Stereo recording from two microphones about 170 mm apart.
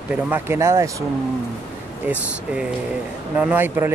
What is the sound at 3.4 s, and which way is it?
Speech, 10° right (ahead or behind).